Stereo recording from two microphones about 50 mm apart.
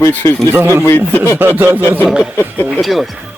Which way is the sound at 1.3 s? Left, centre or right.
Right.